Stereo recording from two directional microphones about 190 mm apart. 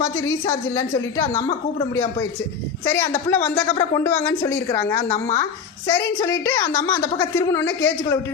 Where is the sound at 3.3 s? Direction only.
10° left (ahead or behind).